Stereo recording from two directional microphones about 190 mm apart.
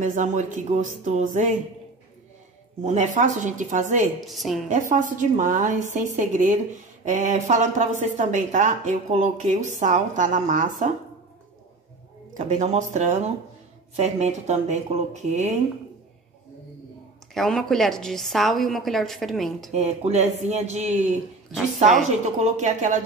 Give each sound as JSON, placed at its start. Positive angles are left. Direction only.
{"t": 0.0, "sound": "speech", "side_deg": -40}
{"t": 2.8, "sound": "speech", "side_deg": -40}
{"t": 4.3, "sound": "a woman's voice", "side_deg": 0}
{"t": 4.6, "sound": "speech", "side_deg": -40}
{"t": 12.4, "sound": "speech", "side_deg": -40}
{"t": 17.3, "sound": "a woman's voice", "side_deg": 0}
{"t": 19.7, "sound": "speech", "side_deg": -35}